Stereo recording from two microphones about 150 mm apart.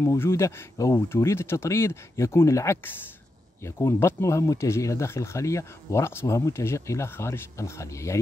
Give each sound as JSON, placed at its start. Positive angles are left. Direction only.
{"t": 0.0, "sound": "speech", "side_deg": 20}